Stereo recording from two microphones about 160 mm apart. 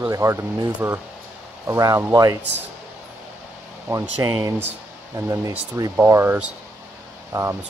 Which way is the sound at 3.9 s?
20° right (ahead or behind).